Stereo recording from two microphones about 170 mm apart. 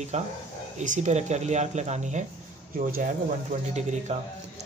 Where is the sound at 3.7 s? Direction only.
40° right (ahead or behind).